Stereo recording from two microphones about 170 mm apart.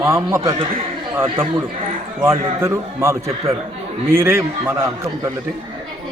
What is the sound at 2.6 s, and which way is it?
A man's voice, 15° right (ahead or behind).